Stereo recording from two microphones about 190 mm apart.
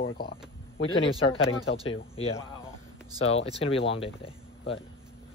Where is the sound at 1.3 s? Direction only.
75° left (ahead or behind).